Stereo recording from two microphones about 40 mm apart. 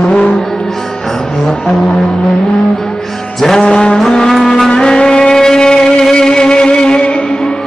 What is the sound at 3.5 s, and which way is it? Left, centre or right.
Music, left.